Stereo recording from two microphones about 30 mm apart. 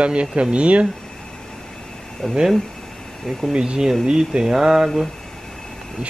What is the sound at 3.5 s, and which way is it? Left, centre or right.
Speech, right.